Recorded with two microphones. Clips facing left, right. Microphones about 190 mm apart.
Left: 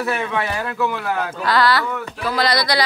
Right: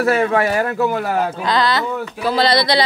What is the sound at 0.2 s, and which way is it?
Speech, 45° right (ahead or behind).